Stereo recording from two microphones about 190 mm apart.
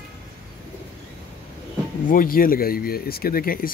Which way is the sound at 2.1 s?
50° left (ahead or behind).